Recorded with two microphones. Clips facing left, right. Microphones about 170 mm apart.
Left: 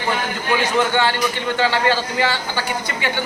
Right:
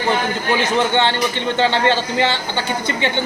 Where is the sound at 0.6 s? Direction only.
25° right (ahead or behind).